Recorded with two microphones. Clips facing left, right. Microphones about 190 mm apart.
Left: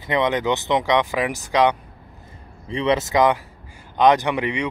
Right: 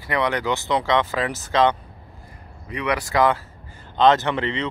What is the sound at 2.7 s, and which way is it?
Speech, 25° left (ahead or behind).